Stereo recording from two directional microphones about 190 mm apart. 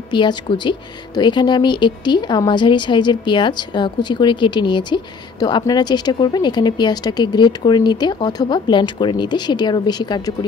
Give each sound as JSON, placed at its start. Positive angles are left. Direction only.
{"t": 0.1, "sound": "speech", "side_deg": 25}